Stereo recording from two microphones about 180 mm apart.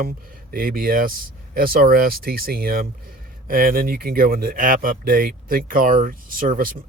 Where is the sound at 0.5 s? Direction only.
50° right (ahead or behind).